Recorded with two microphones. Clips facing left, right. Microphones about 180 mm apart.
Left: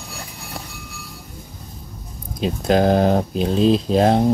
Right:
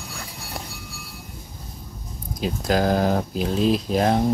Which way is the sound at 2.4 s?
25° left (ahead or behind).